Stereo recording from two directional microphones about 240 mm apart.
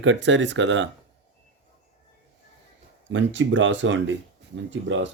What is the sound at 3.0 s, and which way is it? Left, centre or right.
Speech, right.